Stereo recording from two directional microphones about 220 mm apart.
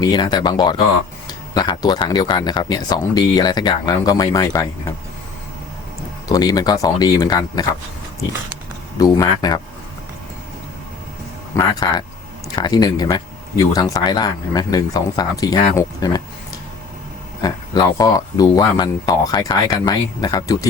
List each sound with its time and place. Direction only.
0.0 s speech: 20° left (ahead or behind)
6.2 s speech: 15° left (ahead or behind)
9.0 s speech: 15° left (ahead or behind)
11.5 s speech: 15° left (ahead or behind)
17.4 s speech: 15° left (ahead or behind)